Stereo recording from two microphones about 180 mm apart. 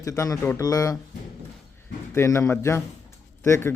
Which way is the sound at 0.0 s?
20° left (ahead or behind).